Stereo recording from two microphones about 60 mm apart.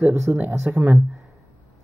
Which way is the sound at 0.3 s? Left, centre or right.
Right.